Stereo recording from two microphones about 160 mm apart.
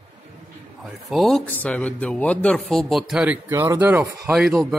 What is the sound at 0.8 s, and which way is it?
A man's voice, centre (ahead or behind).